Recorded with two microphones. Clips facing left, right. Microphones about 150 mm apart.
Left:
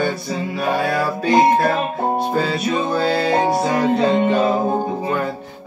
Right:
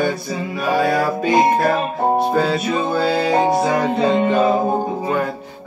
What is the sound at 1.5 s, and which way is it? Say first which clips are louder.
Music: even; 5° right (ahead or behind).